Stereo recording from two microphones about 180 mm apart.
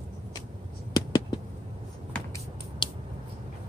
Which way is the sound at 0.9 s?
20° left (ahead or behind).